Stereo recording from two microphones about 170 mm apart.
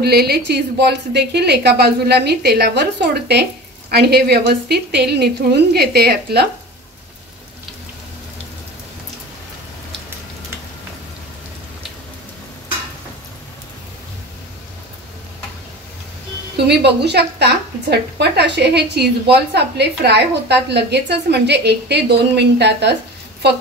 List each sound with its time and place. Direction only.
0.0 s a woman's voice: 70° right (ahead or behind)
3.9 s a woman's voice: 70° right (ahead or behind)
16.5 s a woman's voice: 80° right